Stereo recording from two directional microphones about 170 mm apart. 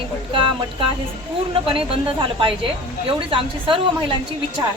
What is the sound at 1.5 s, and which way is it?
A woman's voice, 30° right (ahead or behind).